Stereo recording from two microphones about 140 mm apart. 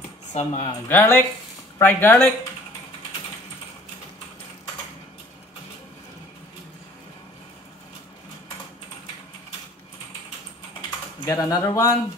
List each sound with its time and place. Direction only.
0.3 s speech: 55° left (ahead or behind)
0.8 s speech: 15° left (ahead or behind)
11.2 s speech: 20° left (ahead or behind)